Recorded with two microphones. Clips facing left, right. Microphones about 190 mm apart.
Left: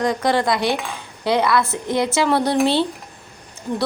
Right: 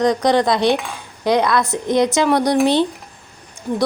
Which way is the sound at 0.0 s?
20° right (ahead or behind).